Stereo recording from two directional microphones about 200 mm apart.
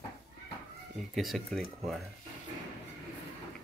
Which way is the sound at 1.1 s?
Centre (ahead or behind).